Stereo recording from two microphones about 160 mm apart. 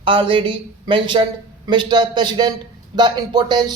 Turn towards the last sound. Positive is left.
turn(degrees=-25)  # may be behind; listen again after turning